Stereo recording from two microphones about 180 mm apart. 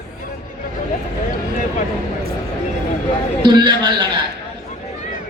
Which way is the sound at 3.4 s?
25° right (ahead or behind).